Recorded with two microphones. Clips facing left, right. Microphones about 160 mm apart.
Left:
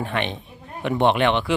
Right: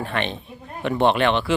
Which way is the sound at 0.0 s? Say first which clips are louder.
Even; 15° left (ahead or behind).